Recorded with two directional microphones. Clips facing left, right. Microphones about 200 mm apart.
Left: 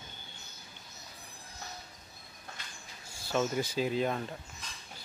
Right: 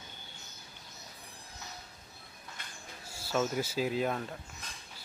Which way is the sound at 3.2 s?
5° right (ahead or behind).